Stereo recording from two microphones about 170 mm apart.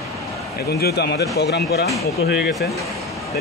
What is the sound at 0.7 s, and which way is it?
A man's voice, 70° left (ahead or behind).